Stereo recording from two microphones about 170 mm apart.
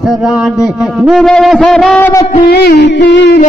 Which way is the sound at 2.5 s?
70° left (ahead or behind).